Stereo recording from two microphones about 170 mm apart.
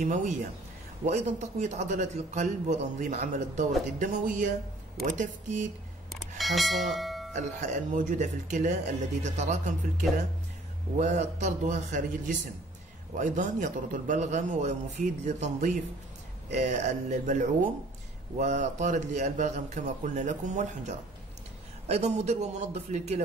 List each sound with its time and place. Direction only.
0.0 s a man's voice: 50° right (ahead or behind)
6.1 s bell: centre (ahead or behind)
7.3 s a man's voice: 45° right (ahead or behind)